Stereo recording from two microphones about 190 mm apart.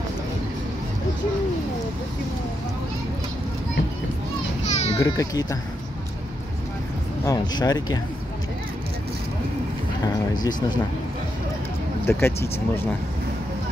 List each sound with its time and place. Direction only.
4.6 s children playing: 35° left (ahead or behind)
4.9 s speech: 15° left (ahead or behind)
7.2 s speech: 20° left (ahead or behind)
10.0 s speech: 20° left (ahead or behind)
12.1 s speech: 15° left (ahead or behind)